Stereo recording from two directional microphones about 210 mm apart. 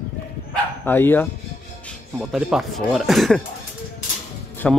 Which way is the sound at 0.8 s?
10° left (ahead or behind).